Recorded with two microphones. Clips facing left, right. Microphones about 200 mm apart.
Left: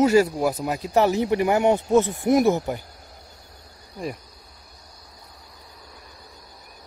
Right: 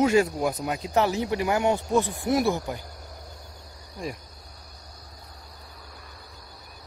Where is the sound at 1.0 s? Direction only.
20° left (ahead or behind).